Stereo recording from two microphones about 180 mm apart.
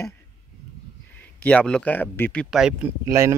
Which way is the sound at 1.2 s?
10° left (ahead or behind).